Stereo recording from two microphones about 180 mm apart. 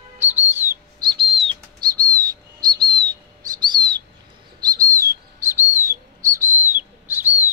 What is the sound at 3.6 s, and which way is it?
Chirp, 25° right (ahead or behind).